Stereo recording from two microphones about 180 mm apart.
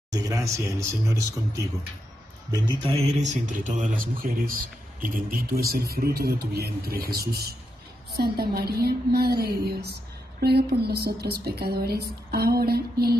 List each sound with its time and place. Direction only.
0.1 s speech: 20° right (ahead or behind)
3.2 s speech: 45° right (ahead or behind); by 13.2 s 60° right (ahead or behind)